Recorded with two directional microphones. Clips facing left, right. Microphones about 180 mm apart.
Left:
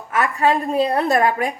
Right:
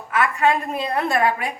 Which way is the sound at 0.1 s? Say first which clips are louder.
Left 1 dB; 40° left (ahead or behind).